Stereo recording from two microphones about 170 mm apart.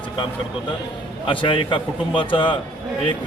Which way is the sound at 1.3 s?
30° left (ahead or behind).